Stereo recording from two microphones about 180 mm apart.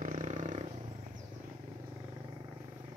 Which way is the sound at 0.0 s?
40° right (ahead or behind).